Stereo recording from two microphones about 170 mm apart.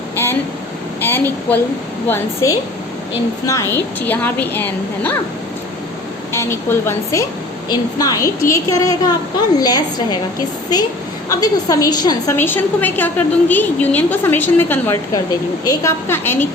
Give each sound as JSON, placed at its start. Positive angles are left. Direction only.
{"t": 1.0, "sound": "a woman's voice", "side_deg": 10}
{"t": 6.3, "sound": "a woman's voice", "side_deg": 15}
{"t": 11.3, "sound": "a woman's voice", "side_deg": 20}